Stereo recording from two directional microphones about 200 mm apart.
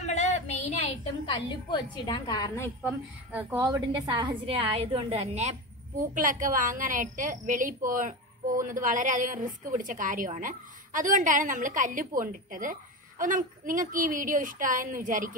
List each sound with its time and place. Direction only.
0.0 s a woman's voice: 35° left (ahead or behind); by 2.9 s 15° left (ahead or behind)
2.9 s a woman's voice: 10° right (ahead or behind); by 15.3 s 40° right (ahead or behind)